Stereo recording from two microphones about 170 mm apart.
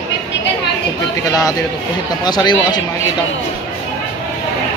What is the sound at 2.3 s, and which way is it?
Speech, 25° left (ahead or behind).